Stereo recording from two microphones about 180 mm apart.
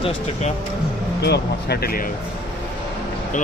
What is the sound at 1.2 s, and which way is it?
Speech, 65° left (ahead or behind).